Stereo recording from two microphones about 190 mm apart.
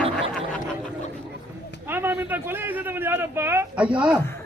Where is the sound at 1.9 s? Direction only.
10° right (ahead or behind).